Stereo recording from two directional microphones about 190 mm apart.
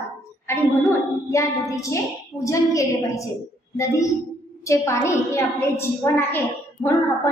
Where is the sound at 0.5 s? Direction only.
15° left (ahead or behind).